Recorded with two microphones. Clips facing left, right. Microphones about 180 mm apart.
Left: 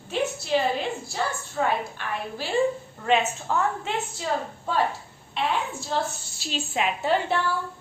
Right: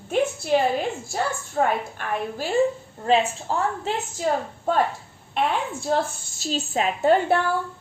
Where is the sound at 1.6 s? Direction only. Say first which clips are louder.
Right 3 dB; 50° right (ahead or behind).